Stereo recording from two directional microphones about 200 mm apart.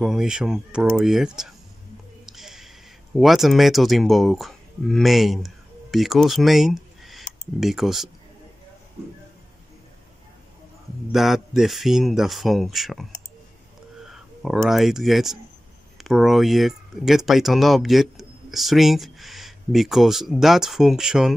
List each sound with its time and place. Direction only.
0.0 s speech: 5° right (ahead or behind)
2.2 s a sound: centre (ahead or behind)
3.2 s speech: centre (ahead or behind)
11.1 s speech: centre (ahead or behind)